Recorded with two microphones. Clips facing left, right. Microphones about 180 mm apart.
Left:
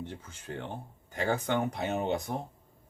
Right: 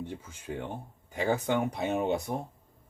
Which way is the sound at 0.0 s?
10° right (ahead or behind).